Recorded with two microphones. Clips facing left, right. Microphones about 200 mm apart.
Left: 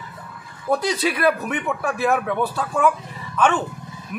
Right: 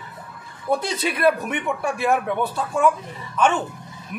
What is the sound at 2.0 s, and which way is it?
Speech, centre (ahead or behind).